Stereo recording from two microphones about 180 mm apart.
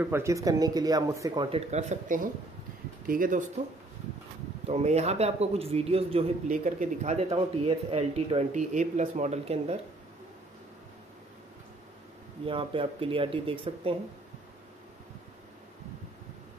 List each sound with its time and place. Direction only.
0.0 s speech: 15° right (ahead or behind)
1.7 s speech: 40° right (ahead or behind)
4.6 s speech: 35° right (ahead or behind)
6.5 s speech: 45° right (ahead or behind)
12.4 s speech: 30° right (ahead or behind)